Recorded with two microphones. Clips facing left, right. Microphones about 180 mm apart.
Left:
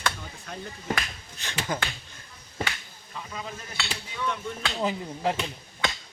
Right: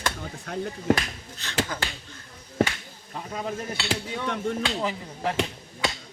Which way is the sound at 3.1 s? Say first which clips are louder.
Right 6 dB; 50° right (ahead or behind).